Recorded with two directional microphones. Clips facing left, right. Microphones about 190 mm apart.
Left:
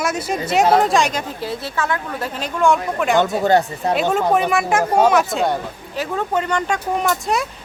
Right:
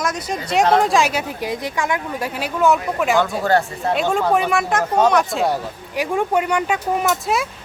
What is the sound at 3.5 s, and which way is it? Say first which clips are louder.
Speech: left 2 dB; 20° left (ahead or behind).